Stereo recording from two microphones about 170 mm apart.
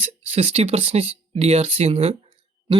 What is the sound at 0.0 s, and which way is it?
Speech, 40° right (ahead or behind).